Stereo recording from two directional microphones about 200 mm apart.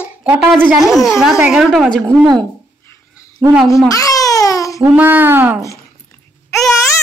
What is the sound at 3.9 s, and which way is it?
Babbling, 15° left (ahead or behind).